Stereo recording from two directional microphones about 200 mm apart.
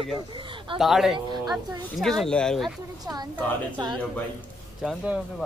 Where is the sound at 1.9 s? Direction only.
Centre (ahead or behind).